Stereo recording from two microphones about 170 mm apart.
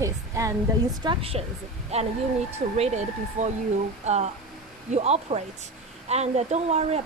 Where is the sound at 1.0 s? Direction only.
30° right (ahead or behind).